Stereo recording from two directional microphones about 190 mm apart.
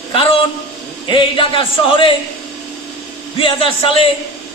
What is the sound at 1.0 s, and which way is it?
Speech, 25° left (ahead or behind).